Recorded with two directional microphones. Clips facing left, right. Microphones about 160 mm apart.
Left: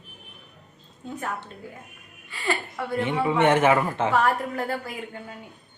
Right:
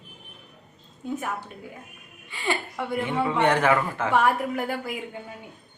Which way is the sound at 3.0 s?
20° left (ahead or behind).